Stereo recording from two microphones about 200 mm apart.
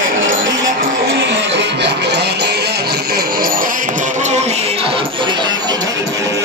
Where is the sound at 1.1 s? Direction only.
60° right (ahead or behind); by 5.8 s 20° right (ahead or behind).